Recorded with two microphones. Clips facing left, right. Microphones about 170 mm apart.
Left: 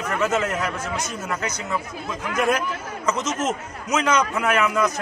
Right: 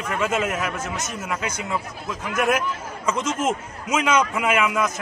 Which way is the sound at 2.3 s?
5° right (ahead or behind).